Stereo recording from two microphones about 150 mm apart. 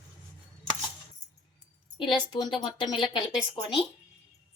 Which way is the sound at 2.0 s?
30° left (ahead or behind).